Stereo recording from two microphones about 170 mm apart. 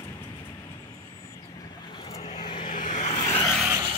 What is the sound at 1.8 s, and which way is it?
Vehicle, 30° left (ahead or behind).